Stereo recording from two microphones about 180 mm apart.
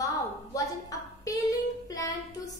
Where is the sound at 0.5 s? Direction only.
20° left (ahead or behind).